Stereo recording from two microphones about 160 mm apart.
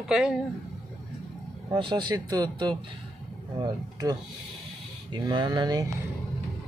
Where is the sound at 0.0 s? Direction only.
5° right (ahead or behind).